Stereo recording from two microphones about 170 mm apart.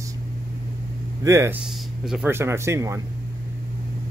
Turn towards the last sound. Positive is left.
turn(degrees=-15)  # may be behind; listen again after turning